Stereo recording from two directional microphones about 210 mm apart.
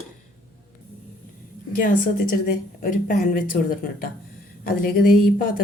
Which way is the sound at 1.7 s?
40° left (ahead or behind).